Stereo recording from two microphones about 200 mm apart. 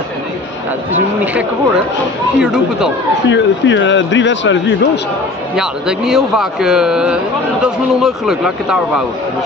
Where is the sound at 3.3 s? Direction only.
65° left (ahead or behind).